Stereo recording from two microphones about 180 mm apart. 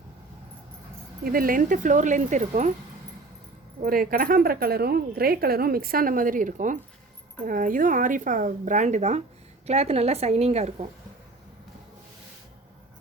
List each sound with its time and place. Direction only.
1.2 s speech: 55° right (ahead or behind)
3.8 s a woman's voice: 50° right (ahead or behind); by 10.8 s 35° right (ahead or behind)